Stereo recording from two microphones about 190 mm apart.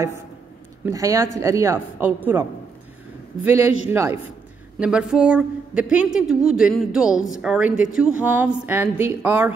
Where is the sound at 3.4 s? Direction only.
10° right (ahead or behind).